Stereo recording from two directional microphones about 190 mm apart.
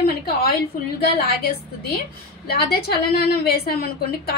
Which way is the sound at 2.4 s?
55° left (ahead or behind).